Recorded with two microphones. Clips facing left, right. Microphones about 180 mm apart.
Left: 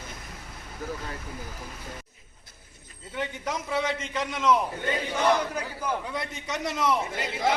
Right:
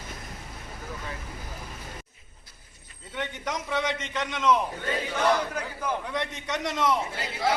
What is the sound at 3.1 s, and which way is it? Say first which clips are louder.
A man's voice: left 1 dB; 5° left (ahead or behind).